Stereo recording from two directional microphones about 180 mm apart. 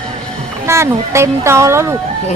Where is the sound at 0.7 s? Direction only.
15° right (ahead or behind).